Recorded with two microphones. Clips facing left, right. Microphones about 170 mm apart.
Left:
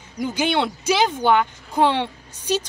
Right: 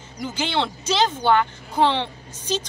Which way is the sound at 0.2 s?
10° left (ahead or behind).